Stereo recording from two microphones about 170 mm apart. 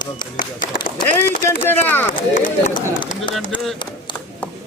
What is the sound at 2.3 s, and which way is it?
Speech, 50° left (ahead or behind).